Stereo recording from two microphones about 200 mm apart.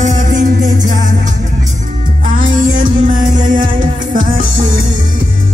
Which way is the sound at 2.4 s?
80° right.